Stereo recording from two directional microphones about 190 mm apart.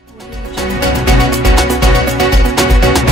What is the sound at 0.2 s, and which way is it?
Music, centre (ahead or behind).